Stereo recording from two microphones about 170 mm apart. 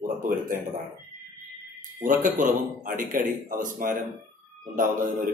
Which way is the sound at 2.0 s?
50° right (ahead or behind).